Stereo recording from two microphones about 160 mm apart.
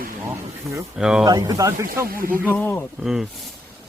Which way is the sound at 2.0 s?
65° right (ahead or behind).